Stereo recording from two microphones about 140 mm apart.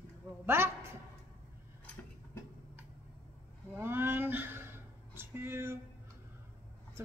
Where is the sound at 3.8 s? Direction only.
15° right (ahead or behind).